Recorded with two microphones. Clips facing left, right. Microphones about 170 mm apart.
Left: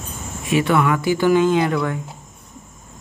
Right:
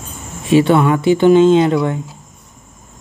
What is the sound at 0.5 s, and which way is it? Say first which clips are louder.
Speech: right 6 dB; 30° right (ahead or behind).